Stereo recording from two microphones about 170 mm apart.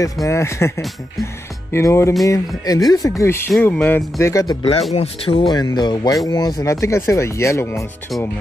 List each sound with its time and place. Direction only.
0.0 s speech: 20° left (ahead or behind)
4.9 s speech: 35° left (ahead or behind); by 7.8 s 15° left (ahead or behind)